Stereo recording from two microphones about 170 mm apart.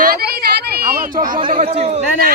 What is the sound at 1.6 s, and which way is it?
Speech, 35° right (ahead or behind).